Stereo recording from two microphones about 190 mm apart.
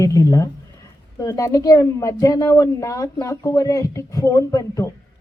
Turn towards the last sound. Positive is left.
turn(degrees=15)  # may be behind; listen again after turning